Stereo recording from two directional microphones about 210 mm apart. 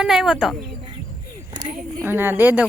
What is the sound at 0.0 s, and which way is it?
Speech, 5° right (ahead or behind).